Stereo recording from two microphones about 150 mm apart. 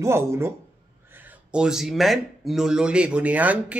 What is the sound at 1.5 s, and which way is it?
Speech, 5° right (ahead or behind).